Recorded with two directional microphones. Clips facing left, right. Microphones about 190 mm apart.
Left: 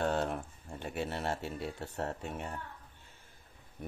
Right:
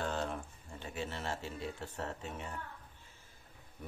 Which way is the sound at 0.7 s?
55° left (ahead or behind).